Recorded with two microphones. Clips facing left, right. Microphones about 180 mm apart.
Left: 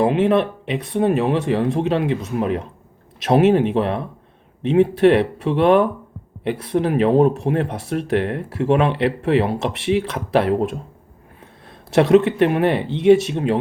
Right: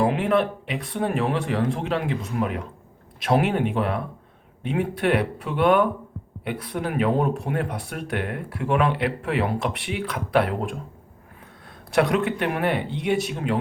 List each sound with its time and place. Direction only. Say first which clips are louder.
0.0 s speech: left 5 dB; 20° left (ahead or behind)
11.9 s speech: left 8 dB; 25° left (ahead or behind)